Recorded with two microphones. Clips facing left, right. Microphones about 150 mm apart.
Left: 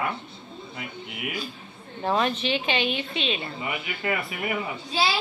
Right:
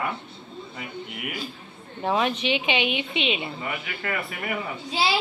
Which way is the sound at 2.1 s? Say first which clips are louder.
Right 1 dB; 10° right (ahead or behind).